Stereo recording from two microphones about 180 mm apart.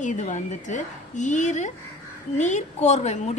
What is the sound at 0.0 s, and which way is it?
A woman's voice, 40° left (ahead or behind).